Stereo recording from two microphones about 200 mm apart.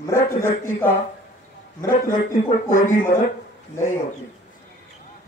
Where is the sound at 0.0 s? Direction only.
15° left (ahead or behind).